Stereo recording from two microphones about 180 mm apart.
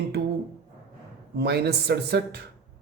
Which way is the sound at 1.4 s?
65° right (ahead or behind).